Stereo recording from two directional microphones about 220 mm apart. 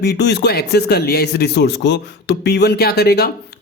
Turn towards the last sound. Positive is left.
turn(degrees=45)  # may be behind; listen again after turning